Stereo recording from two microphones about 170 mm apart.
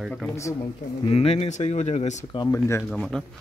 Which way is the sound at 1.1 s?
35° left (ahead or behind).